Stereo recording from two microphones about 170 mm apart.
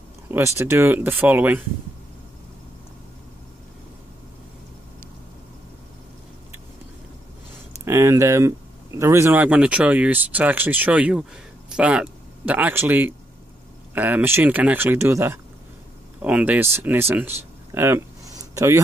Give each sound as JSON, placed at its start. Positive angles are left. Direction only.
{"t": 0.3, "sound": "speech", "side_deg": -15}
{"t": 7.8, "sound": "speech", "side_deg": -15}
{"t": 17.7, "sound": "a sound", "side_deg": -15}